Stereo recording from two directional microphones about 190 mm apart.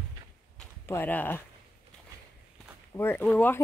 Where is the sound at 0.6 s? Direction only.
10° left (ahead or behind).